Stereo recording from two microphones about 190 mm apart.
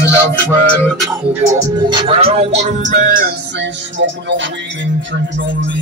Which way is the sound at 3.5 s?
70° right (ahead or behind).